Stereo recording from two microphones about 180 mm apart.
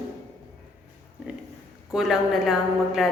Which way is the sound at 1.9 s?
Centre (ahead or behind).